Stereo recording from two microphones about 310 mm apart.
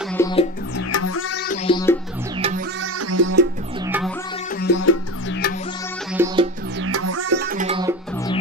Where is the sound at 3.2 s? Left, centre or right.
Right.